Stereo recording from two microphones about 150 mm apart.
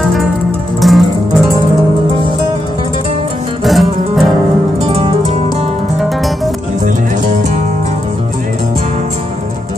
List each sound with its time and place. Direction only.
0.0 s music: centre (ahead or behind)
3.6 s music: centre (ahead or behind)
4.8 s music: 40° right (ahead or behind)
5.9 s music: centre (ahead or behind)